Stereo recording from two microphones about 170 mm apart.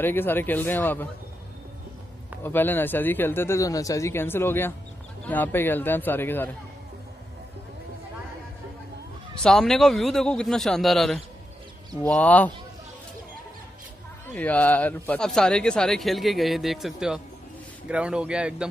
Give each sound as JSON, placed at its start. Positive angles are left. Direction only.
{"t": 0.0, "sound": "speech", "side_deg": 10}
{"t": 2.4, "sound": "speech", "side_deg": 10}
{"t": 9.4, "sound": "speech", "side_deg": 5}
{"t": 14.2, "sound": "speech", "side_deg": 10}